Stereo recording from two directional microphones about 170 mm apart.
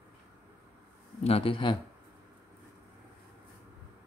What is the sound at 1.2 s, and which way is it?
Speech, 35° left (ahead or behind).